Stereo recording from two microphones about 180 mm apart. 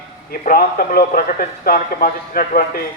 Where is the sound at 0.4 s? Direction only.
50° left (ahead or behind).